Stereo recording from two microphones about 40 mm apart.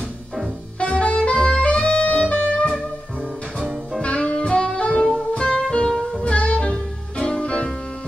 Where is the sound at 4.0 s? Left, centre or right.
Left.